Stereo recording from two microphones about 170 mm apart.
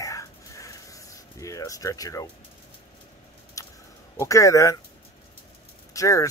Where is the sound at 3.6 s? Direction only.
20° left (ahead or behind).